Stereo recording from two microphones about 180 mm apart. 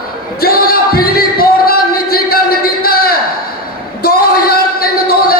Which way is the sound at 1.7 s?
55° left (ahead or behind).